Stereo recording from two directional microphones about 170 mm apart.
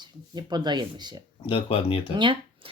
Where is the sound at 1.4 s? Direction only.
35° left (ahead or behind).